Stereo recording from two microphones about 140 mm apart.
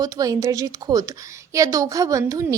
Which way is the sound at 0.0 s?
25° right (ahead or behind).